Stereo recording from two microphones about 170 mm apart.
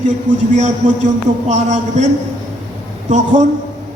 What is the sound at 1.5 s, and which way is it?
Speech, 45° right (ahead or behind).